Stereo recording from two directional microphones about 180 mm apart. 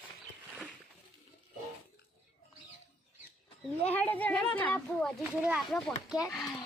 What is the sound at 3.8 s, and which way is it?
Speech, 10° left (ahead or behind).